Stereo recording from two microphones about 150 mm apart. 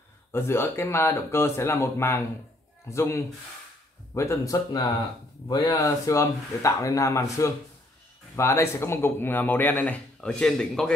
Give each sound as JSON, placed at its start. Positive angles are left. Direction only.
{"t": 0.3, "sound": "speech", "side_deg": 15}